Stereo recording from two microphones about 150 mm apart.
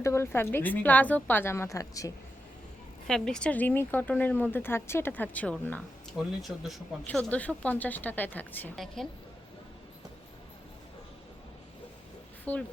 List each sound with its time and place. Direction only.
0.0 s speech: 20° left (ahead or behind)
3.1 s speech: 5° left (ahead or behind)
6.4 s speech: centre (ahead or behind)
12.5 s speech: 10° left (ahead or behind)